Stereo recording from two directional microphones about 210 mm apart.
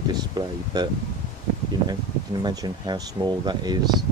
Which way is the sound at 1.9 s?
20° right (ahead or behind).